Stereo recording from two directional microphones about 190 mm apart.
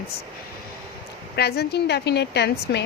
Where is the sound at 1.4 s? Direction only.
60° left (ahead or behind).